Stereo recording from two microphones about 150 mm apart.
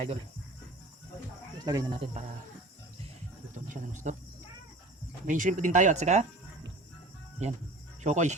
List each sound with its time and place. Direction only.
1.6 s speech: 25° right (ahead or behind)
4.1 s speech: 50° right (ahead or behind)
5.2 s speech: 60° right (ahead or behind)
7.4 s speech: 45° right (ahead or behind)